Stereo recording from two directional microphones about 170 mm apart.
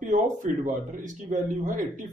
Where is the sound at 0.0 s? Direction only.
50° right (ahead or behind).